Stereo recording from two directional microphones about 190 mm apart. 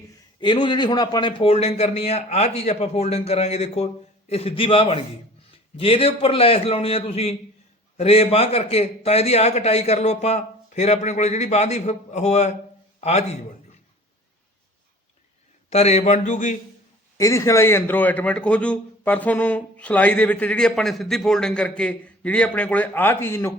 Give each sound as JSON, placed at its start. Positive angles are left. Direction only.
{"t": 0.3, "sound": "a man's voice", "side_deg": 25}
{"t": 15.7, "sound": "a man's voice", "side_deg": 35}
{"t": 17.2, "sound": "a man's voice", "side_deg": 15}